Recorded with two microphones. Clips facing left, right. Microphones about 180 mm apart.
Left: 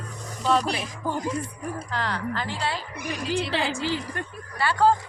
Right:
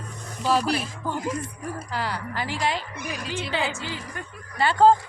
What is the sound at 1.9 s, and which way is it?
Speech, 10° right (ahead or behind).